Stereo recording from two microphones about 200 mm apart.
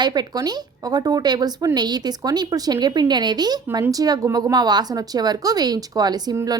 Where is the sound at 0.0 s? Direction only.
20° right (ahead or behind).